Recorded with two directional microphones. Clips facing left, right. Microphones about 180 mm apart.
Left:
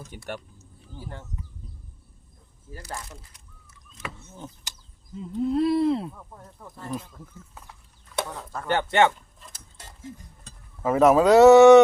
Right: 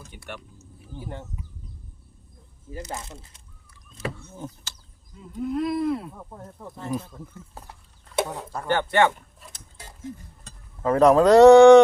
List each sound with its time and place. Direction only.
0.3 s speech: 35° left (ahead or behind)
0.9 s speech: 20° right (ahead or behind)
2.7 s speech: 20° right (ahead or behind)
4.3 s speech: 10° right (ahead or behind)
5.1 s speech: 30° left (ahead or behind)
6.1 s speech: 25° right (ahead or behind)
7.6 s chicken: 35° right (ahead or behind)
8.1 s speech: 15° right (ahead or behind)
8.7 s speech: 20° left (ahead or behind)
10.8 s speech: 5° left (ahead or behind)